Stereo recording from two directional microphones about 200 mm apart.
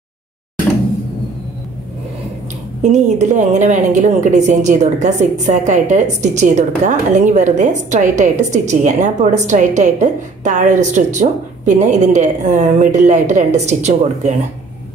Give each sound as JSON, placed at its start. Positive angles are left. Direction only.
{"t": 2.8, "sound": "a woman's voice", "side_deg": -35}